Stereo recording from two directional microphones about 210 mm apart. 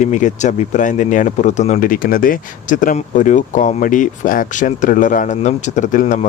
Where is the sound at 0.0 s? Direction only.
35° left (ahead or behind).